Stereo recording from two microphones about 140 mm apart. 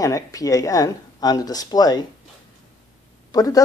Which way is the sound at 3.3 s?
25° left (ahead or behind).